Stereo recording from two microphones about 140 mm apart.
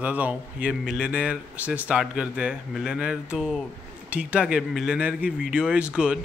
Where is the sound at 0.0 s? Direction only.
10° right (ahead or behind).